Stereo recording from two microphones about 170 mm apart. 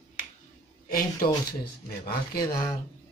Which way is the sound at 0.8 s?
60° left (ahead or behind).